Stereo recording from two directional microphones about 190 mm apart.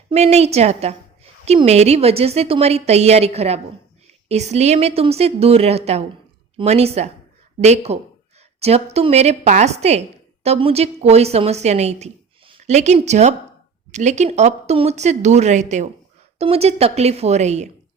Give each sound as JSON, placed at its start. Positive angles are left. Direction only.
{"t": 0.1, "sound": "a woman's voice", "side_deg": -35}